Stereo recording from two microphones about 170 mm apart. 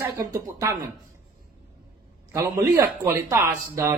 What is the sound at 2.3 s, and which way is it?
Speech, 20° right (ahead or behind).